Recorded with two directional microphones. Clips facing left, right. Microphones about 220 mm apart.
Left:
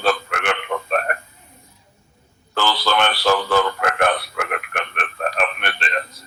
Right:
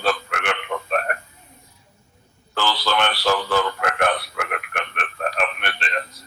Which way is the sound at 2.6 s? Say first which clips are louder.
Left 2 dB; 50° left (ahead or behind).